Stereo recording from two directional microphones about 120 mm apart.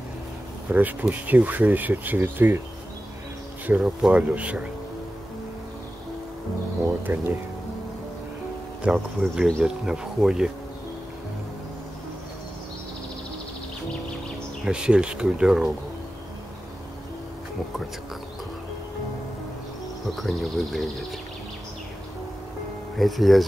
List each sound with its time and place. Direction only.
0.7 s speech: 15° right (ahead or behind)
3.6 s speech: 10° right (ahead or behind)
7.1 s speech: 20° right (ahead or behind)
8.8 s speech: 5° right (ahead or behind)
14.6 s speech: 5° right (ahead or behind)
20.2 s speech: centre (ahead or behind)
22.9 s speech: centre (ahead or behind)